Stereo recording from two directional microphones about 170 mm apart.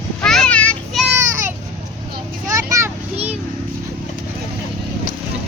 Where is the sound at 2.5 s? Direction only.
20° right (ahead or behind).